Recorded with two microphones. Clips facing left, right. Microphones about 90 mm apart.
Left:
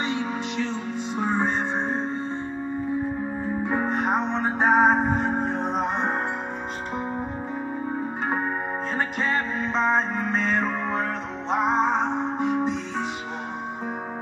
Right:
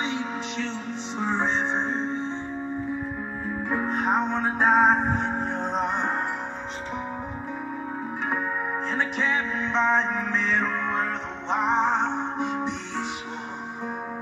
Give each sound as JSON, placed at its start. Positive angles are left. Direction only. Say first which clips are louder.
{"t": 0.0, "sound": "music", "louder": "left 2 dB", "side_deg": 15}
{"t": 1.3, "sound": "music", "louder": "even", "side_deg": 50}
{"t": 3.9, "sound": "music", "louder": "even", "side_deg": 0}
{"t": 5.1, "sound": "music", "louder": "left 3 dB", "side_deg": 40}
{"t": 8.9, "sound": "music", "louder": "left 1 dB", "side_deg": 5}
{"t": 11.5, "sound": "music", "louder": "left 1 dB", "side_deg": 5}
{"t": 11.9, "sound": "music", "louder": "left 1 dB", "side_deg": 45}